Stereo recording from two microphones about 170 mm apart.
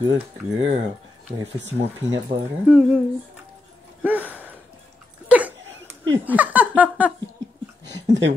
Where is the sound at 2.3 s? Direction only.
80° right.